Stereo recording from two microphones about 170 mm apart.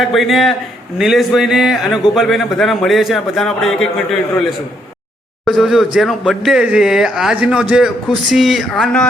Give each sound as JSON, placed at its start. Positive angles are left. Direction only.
{"t": 0.0, "sound": "a man's voice", "side_deg": 0}